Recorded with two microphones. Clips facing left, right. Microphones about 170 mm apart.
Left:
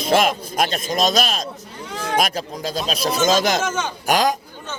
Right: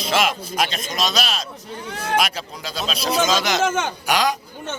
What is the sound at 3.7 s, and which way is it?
Speech, 55° right (ahead or behind).